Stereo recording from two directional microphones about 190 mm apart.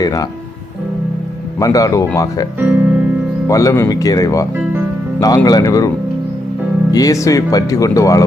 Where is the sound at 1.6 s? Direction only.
20° left (ahead or behind).